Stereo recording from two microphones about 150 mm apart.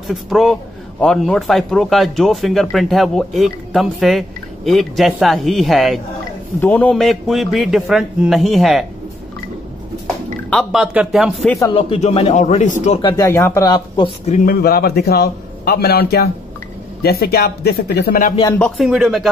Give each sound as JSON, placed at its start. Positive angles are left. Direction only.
{"t": 0.1, "sound": "speech", "side_deg": 0}
{"t": 10.5, "sound": "speech", "side_deg": 0}
{"t": 11.7, "sound": "a man's voice", "side_deg": 40}
{"t": 13.0, "sound": "speech", "side_deg": 20}
{"t": 14.4, "sound": "a man's voice", "side_deg": 80}
{"t": 18.8, "sound": "speech", "side_deg": 0}